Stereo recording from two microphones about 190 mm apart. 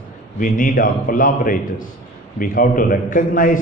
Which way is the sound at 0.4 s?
45° left (ahead or behind).